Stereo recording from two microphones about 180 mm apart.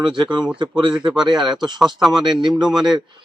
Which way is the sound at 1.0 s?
5° right (ahead or behind).